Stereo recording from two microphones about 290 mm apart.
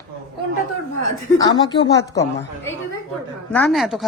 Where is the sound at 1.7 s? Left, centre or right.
Centre.